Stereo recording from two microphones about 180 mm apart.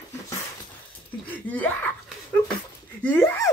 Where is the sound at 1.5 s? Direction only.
10° left (ahead or behind).